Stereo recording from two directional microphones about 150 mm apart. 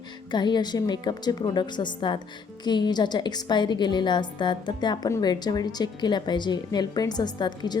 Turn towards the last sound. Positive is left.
turn(degrees=30)  # may be behind; listen again after turning